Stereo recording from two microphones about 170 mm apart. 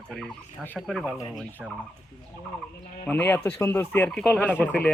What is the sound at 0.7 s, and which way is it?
Speech, centre (ahead or behind).